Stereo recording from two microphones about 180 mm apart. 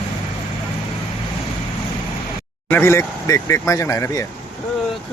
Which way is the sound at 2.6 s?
10° left (ahead or behind).